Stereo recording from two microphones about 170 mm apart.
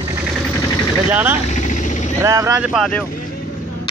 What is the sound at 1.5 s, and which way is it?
Vehicle, 45° left (ahead or behind).